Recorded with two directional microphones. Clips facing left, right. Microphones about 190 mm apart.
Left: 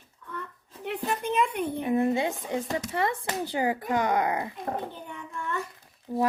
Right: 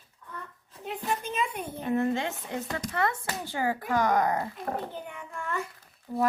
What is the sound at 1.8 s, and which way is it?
Speech, 10° left (ahead or behind).